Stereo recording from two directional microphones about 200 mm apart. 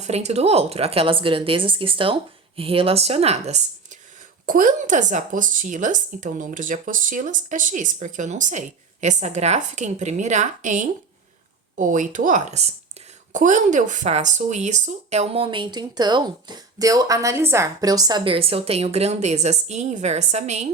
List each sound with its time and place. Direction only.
0.0 s a woman's voice: 35° right (ahead or behind)